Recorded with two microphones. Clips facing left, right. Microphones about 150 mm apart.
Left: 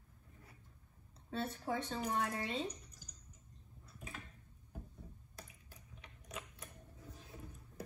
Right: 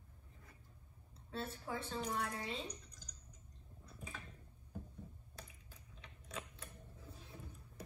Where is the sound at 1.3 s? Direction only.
30° left (ahead or behind).